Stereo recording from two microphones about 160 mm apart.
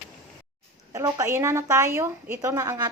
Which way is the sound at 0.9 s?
20° right (ahead or behind).